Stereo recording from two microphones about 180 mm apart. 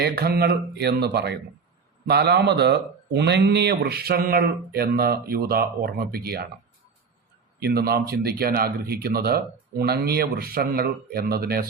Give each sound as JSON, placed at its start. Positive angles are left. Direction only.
{"t": 0.0, "sound": "speech", "side_deg": -60}
{"t": 7.6, "sound": "speech", "side_deg": -60}